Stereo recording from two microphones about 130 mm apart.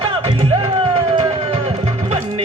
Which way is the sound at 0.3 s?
40° right (ahead or behind).